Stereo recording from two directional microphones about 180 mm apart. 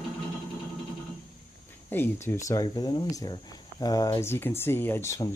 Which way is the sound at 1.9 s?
10° left (ahead or behind).